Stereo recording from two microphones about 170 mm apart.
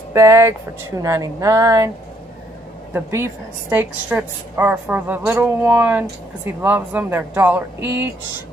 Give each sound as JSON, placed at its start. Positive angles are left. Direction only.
{"t": 0.1, "sound": "speech", "side_deg": -15}
{"t": 2.9, "sound": "a woman's voice", "side_deg": -15}